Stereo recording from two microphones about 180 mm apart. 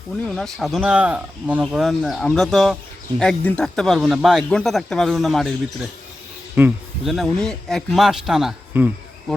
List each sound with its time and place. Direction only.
0.3 s a man's voice: centre (ahead or behind)